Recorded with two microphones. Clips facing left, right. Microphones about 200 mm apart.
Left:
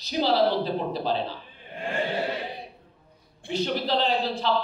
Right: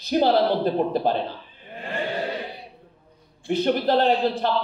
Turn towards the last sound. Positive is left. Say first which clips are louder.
# right 5 dB
turn(degrees=-55)  # may be behind; listen again after turning